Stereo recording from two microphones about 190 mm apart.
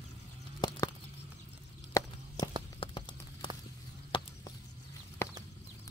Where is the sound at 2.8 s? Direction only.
25° left (ahead or behind).